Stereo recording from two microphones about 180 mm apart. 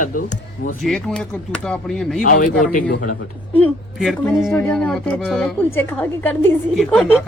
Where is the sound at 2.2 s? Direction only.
50° left (ahead or behind).